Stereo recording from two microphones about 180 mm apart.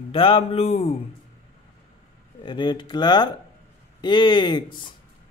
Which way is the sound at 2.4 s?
25° left (ahead or behind).